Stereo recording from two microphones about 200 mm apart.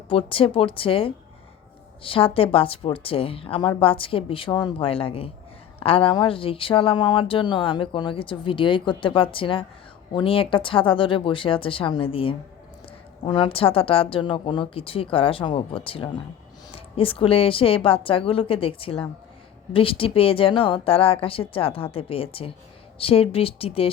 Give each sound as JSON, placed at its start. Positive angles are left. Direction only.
{"t": 0.1, "sound": "speech", "side_deg": 25}